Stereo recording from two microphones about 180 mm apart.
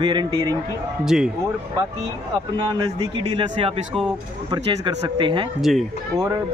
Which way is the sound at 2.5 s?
25° right (ahead or behind).